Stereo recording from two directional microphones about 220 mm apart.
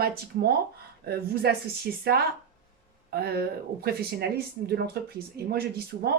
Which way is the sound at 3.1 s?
45° right (ahead or behind).